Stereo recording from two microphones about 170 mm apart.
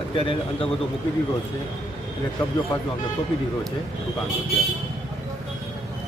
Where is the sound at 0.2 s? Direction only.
30° left (ahead or behind).